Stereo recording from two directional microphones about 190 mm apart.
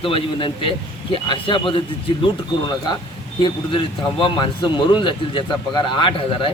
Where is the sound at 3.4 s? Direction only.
25° left (ahead or behind).